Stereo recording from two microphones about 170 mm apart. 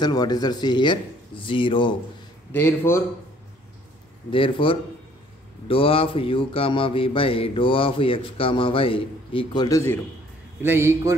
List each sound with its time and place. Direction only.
0.0 s speech: 25° left (ahead or behind)
2.5 s a man's voice: 15° left (ahead or behind)
4.3 s a man's voice: 30° left (ahead or behind)
10.6 s a man's voice: 15° right (ahead or behind)